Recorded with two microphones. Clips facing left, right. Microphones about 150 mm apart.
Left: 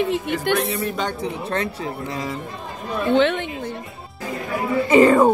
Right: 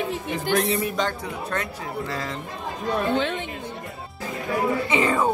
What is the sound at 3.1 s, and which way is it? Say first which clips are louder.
Speech: left 7 dB; 70° left (ahead or behind).